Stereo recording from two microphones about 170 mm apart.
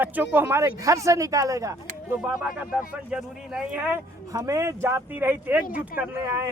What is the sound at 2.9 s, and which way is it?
Speech, 5° right (ahead or behind).